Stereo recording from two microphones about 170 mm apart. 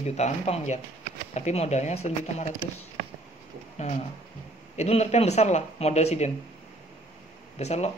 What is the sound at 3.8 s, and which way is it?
Speech, 40° left (ahead or behind).